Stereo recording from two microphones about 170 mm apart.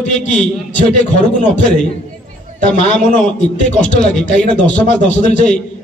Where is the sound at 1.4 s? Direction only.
45° left (ahead or behind).